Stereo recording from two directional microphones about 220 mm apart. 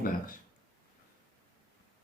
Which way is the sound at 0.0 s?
40° left (ahead or behind).